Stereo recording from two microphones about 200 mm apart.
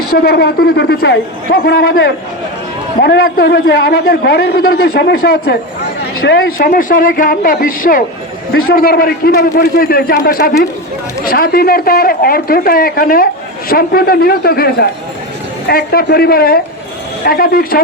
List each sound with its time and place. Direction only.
0.1 s a man's voice: 50° left (ahead or behind)
3.0 s a man's voice: 55° left (ahead or behind)